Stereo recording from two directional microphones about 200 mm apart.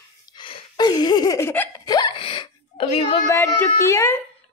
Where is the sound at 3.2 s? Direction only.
15° left (ahead or behind).